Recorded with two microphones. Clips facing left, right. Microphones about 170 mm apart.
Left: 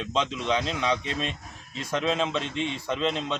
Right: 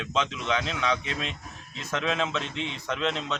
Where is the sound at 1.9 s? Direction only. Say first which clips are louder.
Left 2 dB; 15° left (ahead or behind).